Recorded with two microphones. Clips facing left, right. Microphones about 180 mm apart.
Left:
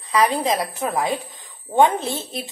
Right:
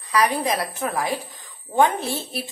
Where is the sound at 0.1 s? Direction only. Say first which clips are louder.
Left 2 dB; 25° left (ahead or behind).